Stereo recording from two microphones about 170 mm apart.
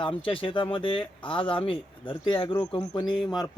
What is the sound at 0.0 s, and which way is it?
Speech, 30° left (ahead or behind).